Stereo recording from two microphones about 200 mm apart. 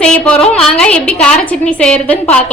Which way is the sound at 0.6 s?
5° left (ahead or behind).